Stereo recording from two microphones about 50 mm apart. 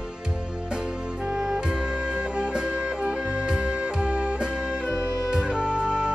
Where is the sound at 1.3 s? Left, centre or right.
Centre.